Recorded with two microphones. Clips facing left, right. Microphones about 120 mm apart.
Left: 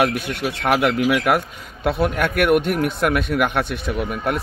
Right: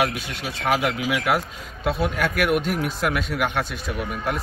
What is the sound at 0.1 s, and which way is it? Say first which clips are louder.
A man's voice: left 7 dB; 60° left (ahead or behind).